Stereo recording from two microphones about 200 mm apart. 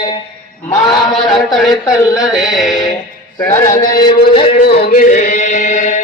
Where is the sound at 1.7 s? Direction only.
20° left (ahead or behind).